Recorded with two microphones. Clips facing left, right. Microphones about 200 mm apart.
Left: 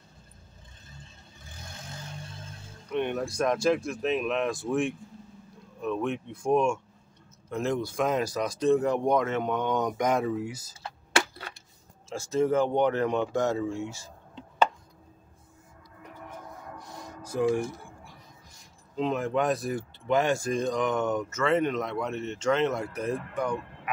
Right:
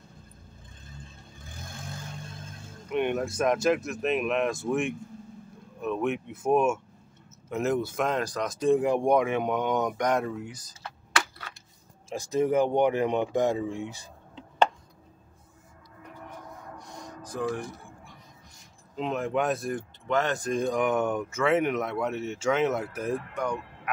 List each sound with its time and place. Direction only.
2.9 s speech: 5° right (ahead or behind)
8.1 s speech: 10° left (ahead or behind)
8.5 s speech: 10° right (ahead or behind)
9.9 s speech: 5° left (ahead or behind)
10.8 s a sound: 30° left (ahead or behind)
12.1 s speech: 15° right (ahead or behind)
17.2 s music: 10° left (ahead or behind)
18.9 s speech: centre (ahead or behind)
20.5 s speech: 10° right (ahead or behind)